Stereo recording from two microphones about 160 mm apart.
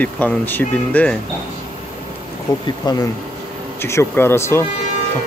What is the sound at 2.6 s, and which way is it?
Speech, 25° left (ahead or behind).